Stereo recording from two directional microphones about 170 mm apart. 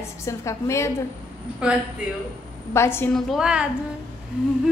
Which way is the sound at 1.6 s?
5° right (ahead or behind).